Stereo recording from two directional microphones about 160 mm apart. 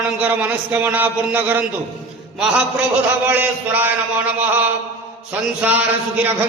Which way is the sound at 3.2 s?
10° right (ahead or behind).